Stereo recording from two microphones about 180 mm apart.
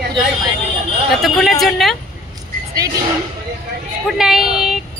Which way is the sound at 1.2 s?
Centre (ahead or behind).